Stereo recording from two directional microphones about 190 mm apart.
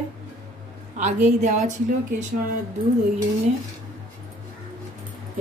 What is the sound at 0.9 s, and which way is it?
Speech, 40° right (ahead or behind).